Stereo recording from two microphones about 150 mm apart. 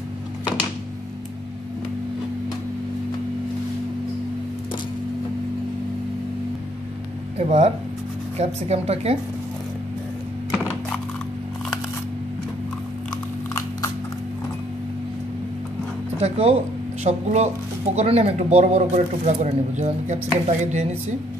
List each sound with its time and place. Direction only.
7.3 s speech: 45° right (ahead or behind)
16.2 s speech: 40° right (ahead or behind)